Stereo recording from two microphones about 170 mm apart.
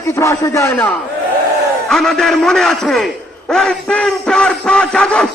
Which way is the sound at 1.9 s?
Centre (ahead or behind).